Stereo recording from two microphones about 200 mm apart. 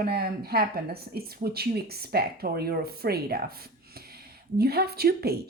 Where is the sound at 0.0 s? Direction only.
50° right (ahead or behind).